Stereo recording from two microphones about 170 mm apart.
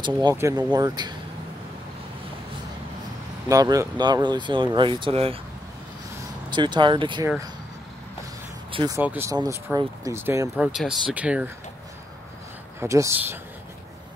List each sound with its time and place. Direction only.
0.0 s speech: 20° right (ahead or behind)
3.4 s speech: 20° right (ahead or behind)
6.5 s speech: 25° right (ahead or behind)
8.7 s speech: 25° right (ahead or behind)
9.0 s speech: 10° right (ahead or behind)
10.7 s speech: centre (ahead or behind)
12.8 s speech: 15° right (ahead or behind)